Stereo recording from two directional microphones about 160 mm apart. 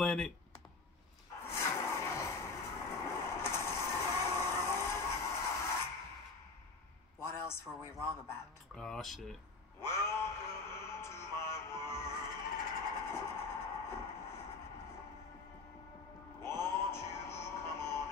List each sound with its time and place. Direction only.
0.0 s speech: 5° left (ahead or behind)
1.4 s vehicle: 15° left (ahead or behind)
7.2 s a sound: 15° left (ahead or behind)
7.8 s speech: 15° left (ahead or behind)
8.7 s speech: 5° left (ahead or behind)
9.8 s music: 15° left (ahead or behind)
12.9 s train: 15° left (ahead or behind)
16.3 s music: 15° left (ahead or behind)